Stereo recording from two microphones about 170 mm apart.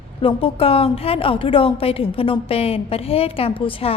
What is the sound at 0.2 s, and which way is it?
A woman's voice, 30° left (ahead or behind).